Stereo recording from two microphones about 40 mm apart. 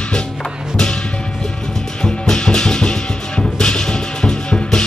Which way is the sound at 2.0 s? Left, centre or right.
Centre.